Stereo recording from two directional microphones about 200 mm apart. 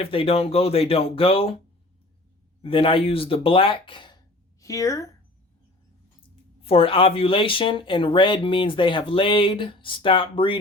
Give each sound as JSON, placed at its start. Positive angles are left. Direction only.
{"t": 0.0, "sound": "speech", "side_deg": 25}
{"t": 2.6, "sound": "a woman's voice", "side_deg": 25}
{"t": 6.6, "sound": "speech", "side_deg": 30}